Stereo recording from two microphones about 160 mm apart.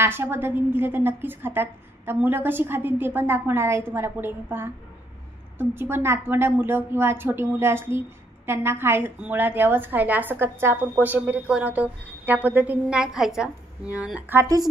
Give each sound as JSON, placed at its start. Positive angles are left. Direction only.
{"t": 0.0, "sound": "a woman's voice", "side_deg": -15}
{"t": 14.4, "sound": "speech", "side_deg": -20}